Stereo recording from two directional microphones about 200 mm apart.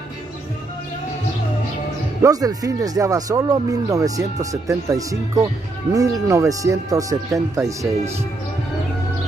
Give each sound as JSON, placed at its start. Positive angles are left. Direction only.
{"t": 2.2, "sound": "speech", "side_deg": -20}